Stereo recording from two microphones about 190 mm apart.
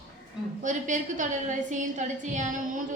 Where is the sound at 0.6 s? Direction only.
40° right (ahead or behind).